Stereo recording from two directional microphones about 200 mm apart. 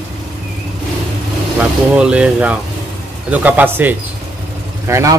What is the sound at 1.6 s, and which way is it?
Speech, 5° right (ahead or behind).